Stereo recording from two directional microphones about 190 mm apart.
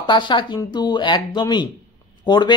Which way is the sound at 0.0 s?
25° left (ahead or behind).